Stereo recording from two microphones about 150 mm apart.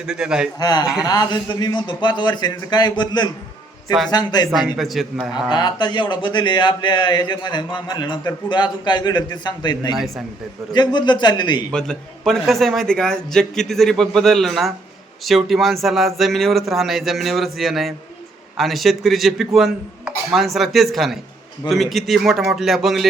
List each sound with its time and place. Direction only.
0.0 s a man's voice: 5° right (ahead or behind)
0.6 s speech: 25° left (ahead or behind)
4.5 s a man's voice: centre (ahead or behind)
5.3 s speech: 30° left (ahead or behind)
9.9 s a man's voice: centre (ahead or behind)
10.7 s speech: 30° left (ahead or behind)
11.7 s a man's voice: 5° left (ahead or behind)